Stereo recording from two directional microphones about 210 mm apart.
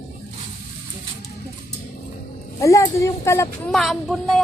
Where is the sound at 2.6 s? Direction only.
15° left (ahead or behind).